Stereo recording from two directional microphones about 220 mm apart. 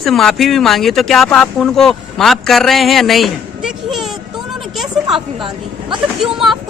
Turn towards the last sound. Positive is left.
turn(degrees=0)  # may be behind; listen again after turning